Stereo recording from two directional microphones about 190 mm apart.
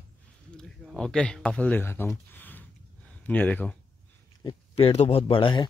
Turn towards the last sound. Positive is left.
turn(degrees=25)  # may be behind; listen again after turning